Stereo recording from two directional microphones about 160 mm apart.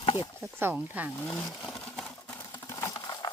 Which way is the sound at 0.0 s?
35° left (ahead or behind).